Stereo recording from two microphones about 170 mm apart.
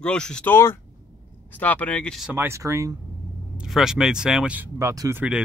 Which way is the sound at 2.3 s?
15° right (ahead or behind).